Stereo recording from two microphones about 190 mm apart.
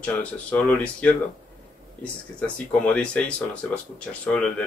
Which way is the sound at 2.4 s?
5° left (ahead or behind).